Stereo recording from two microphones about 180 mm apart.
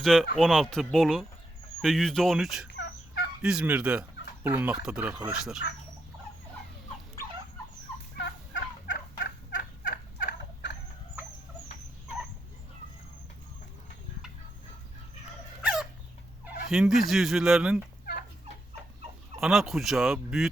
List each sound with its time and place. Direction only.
0.0 s speech: centre (ahead or behind)
2.7 s fowl: 75° left (ahead or behind)
3.4 s speech: 5° right (ahead or behind)
8.9 s turkey: 60° left (ahead or behind)
15.6 s chicken: 5° right (ahead or behind)
16.6 s speech: centre (ahead or behind)
18.0 s turkey: 55° left (ahead or behind)
19.4 s speech: centre (ahead or behind)